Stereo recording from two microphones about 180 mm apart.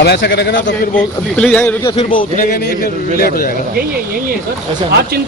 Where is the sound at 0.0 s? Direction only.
65° left (ahead or behind).